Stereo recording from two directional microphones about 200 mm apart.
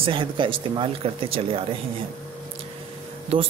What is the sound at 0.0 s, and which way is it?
Speech, 25° right (ahead or behind).